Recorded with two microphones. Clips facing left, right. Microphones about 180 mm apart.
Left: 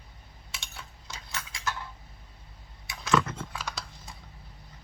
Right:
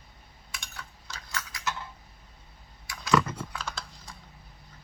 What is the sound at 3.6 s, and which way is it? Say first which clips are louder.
Typing: even; 15° left (ahead or behind).